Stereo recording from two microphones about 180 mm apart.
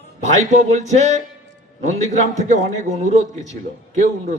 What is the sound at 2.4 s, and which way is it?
A man's voice, 40° right (ahead or behind).